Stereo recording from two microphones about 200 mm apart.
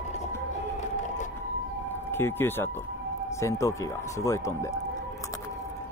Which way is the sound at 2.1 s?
10° left (ahead or behind).